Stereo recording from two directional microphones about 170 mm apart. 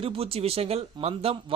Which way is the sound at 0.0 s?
35° right (ahead or behind).